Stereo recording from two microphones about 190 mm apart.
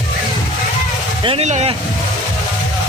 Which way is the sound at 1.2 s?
35° right (ahead or behind).